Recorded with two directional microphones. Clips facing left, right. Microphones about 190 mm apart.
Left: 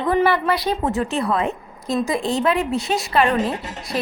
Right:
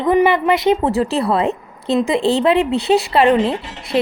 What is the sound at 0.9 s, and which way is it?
Speech, 35° right (ahead or behind).